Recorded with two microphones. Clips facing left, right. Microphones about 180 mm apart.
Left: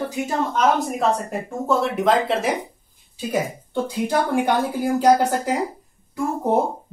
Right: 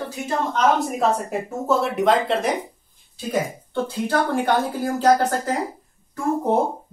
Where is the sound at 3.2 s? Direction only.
10° left (ahead or behind).